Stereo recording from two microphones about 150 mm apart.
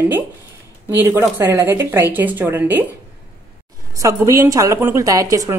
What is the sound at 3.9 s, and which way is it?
A woman's voice, 20° right (ahead or behind).